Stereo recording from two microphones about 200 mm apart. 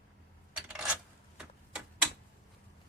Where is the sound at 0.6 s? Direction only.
5° right (ahead or behind).